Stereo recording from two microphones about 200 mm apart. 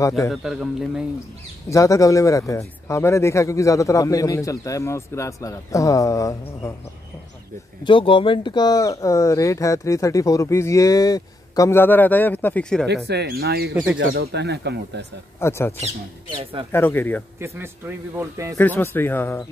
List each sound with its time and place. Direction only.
0.3 s a man's voice: centre (ahead or behind)
1.7 s speech: 15° left (ahead or behind)
7.8 s speech: 25° left (ahead or behind); by 12.8 s 5° left (ahead or behind)
12.8 s speech: 55° right (ahead or behind)
15.4 s speech: 10° left (ahead or behind)
15.8 s speech: 25° right (ahead or behind)
16.7 s speech: 10° left (ahead or behind)
17.4 s speech: 10° right (ahead or behind)
18.6 s speech: 10° left (ahead or behind)